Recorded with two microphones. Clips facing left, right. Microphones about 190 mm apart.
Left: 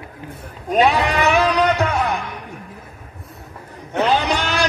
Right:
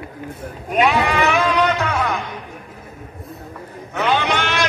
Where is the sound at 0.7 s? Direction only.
35° left (ahead or behind).